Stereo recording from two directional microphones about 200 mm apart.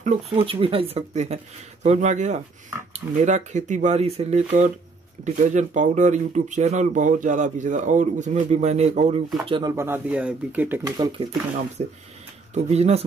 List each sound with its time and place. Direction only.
0.0 s speech: 30° right (ahead or behind)
9.5 s speech: 20° right (ahead or behind)
11.0 s speech: 25° right (ahead or behind)
12.5 s speech: 30° right (ahead or behind)